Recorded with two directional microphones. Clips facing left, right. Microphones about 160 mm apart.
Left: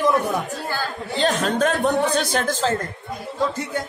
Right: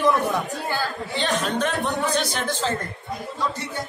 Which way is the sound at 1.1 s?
40° left (ahead or behind).